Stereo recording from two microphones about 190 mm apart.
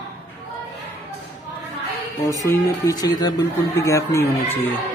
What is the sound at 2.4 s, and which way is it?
Speech, 20° left (ahead or behind).